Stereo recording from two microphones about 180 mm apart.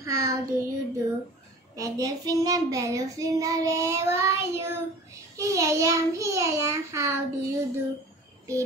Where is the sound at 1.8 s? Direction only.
20° right (ahead or behind).